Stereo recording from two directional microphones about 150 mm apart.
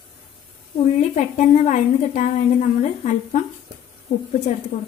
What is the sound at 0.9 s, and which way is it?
A woman's voice, 50° left (ahead or behind).